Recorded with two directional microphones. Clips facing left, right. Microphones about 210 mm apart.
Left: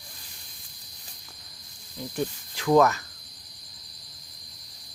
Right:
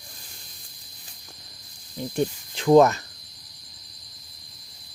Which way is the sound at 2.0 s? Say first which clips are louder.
Right 5 dB; 25° right (ahead or behind).